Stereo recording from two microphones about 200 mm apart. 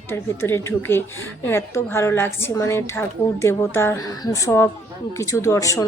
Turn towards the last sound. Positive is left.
turn(degrees=15)  # may be behind; listen again after turning